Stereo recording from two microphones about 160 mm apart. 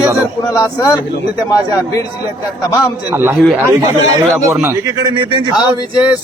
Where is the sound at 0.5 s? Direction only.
20° left (ahead or behind).